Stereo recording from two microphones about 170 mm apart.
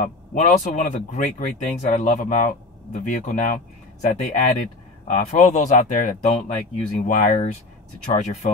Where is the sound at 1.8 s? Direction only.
45° left (ahead or behind).